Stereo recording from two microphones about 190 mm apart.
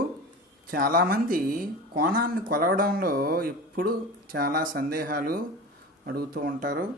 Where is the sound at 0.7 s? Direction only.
50° right (ahead or behind).